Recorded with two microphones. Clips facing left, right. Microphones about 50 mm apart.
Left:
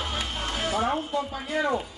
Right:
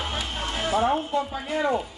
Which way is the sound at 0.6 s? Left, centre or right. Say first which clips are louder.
Right 4 dB; right.